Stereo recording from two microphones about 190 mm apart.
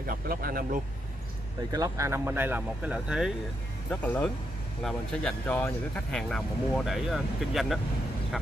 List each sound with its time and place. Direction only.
0.0 s speech: 50° right (ahead or behind)
1.7 s speech: 15° right (ahead or behind); by 7.8 s centre (ahead or behind)